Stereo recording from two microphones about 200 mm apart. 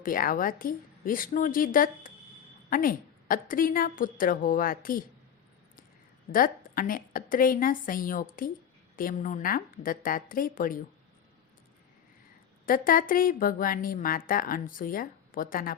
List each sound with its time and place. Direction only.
0.0 s speech: 45° left (ahead or behind)
6.3 s speech: 45° left (ahead or behind)
12.6 s speech: 45° left (ahead or behind)